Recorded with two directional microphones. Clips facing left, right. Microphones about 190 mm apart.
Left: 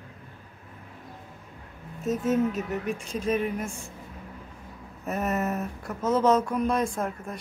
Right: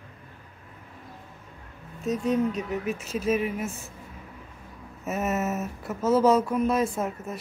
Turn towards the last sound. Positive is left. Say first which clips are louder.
# right 1 dB
turn(degrees=-5)  # may be behind; listen again after turning